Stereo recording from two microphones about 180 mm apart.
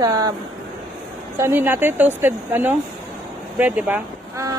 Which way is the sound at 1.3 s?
15° right (ahead or behind).